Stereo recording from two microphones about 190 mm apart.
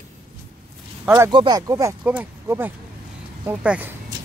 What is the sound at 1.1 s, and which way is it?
Speech, 20° right (ahead or behind).